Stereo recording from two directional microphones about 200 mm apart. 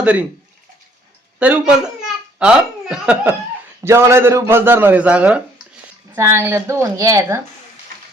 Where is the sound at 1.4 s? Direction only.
5° right (ahead or behind).